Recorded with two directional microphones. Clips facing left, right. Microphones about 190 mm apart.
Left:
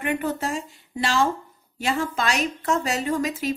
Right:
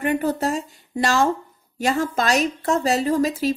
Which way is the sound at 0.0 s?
35° right (ahead or behind).